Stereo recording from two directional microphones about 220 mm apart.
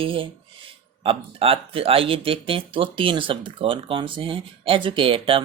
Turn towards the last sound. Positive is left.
turn(degrees=-25)  # may be behind; listen again after turning